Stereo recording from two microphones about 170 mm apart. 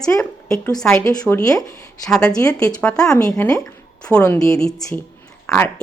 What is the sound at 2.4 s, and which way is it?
A woman's voice, 20° left (ahead or behind).